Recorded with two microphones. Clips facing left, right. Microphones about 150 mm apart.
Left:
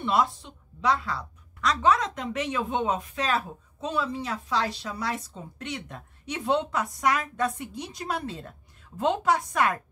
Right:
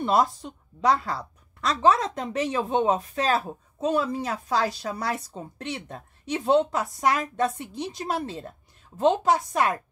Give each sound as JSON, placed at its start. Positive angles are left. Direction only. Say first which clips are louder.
{"t": 0.0, "sound": "a woman's voice", "louder": "right 3 dB", "side_deg": -40}
{"t": 5.7, "sound": "a woman's voice", "louder": "right 1 dB", "side_deg": -30}